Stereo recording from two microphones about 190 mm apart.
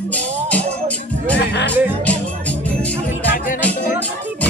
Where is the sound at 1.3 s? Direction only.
65° left (ahead or behind).